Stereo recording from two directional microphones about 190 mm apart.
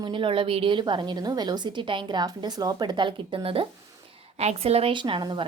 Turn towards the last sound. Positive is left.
turn(degrees=-25)  # may be behind; listen again after turning